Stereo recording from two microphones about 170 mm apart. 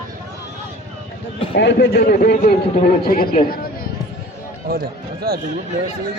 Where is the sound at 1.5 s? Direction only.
90° left; by 2.1 s 65° left (ahead or behind).